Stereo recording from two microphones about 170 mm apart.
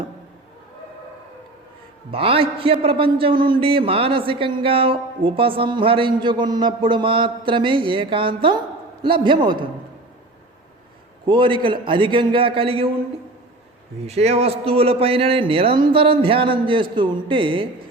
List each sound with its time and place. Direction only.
2.0 s a man's voice: 35° right (ahead or behind)
11.3 s a man's voice: 30° right (ahead or behind)
14.0 s a man's voice: 40° right (ahead or behind)